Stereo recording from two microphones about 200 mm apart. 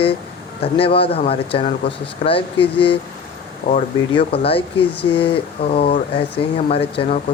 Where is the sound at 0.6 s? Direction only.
30° left (ahead or behind).